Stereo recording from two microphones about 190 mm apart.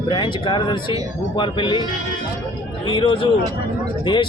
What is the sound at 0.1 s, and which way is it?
Speech, 25° left (ahead or behind).